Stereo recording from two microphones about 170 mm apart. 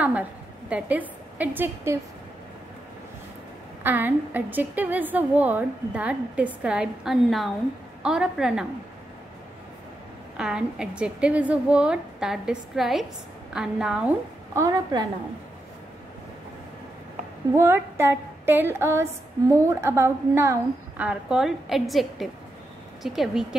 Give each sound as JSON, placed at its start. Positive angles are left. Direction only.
{"t": 0.0, "sound": "a woman's voice", "side_deg": -10}
{"t": 3.8, "sound": "a woman's voice", "side_deg": -10}
{"t": 10.3, "sound": "a woman's voice", "side_deg": -5}
{"t": 14.5, "sound": "a woman's voice", "side_deg": -20}
{"t": 17.6, "sound": "a woman's voice", "side_deg": -15}